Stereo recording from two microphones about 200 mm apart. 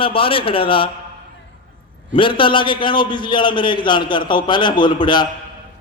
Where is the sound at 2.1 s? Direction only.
25° left (ahead or behind).